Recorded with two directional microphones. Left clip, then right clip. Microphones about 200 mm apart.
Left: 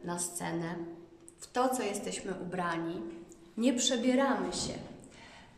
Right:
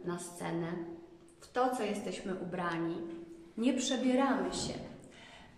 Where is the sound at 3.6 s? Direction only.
35° left (ahead or behind).